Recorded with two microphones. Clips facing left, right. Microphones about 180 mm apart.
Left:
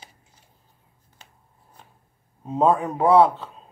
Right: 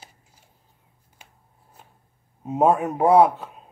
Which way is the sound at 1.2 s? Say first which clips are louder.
Even; 10° right (ahead or behind).